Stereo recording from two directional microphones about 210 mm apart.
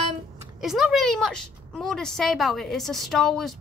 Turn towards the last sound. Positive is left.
turn(degrees=0)  # may be behind; listen again after turning